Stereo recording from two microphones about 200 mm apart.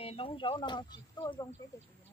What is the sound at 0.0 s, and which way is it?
Speech, 30° left (ahead or behind).